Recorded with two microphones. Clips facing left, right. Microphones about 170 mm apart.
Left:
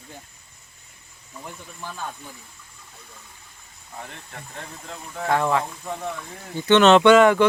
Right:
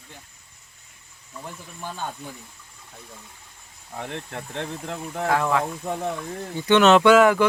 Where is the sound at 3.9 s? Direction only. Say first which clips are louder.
Right 6 dB; 65° right (ahead or behind).